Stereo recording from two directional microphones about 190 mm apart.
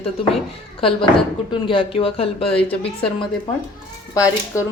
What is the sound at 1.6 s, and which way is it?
A man's voice, 25° left (ahead or behind).